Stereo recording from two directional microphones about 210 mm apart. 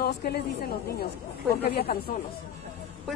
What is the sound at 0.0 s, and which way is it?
A woman's voice, 50° left (ahead or behind).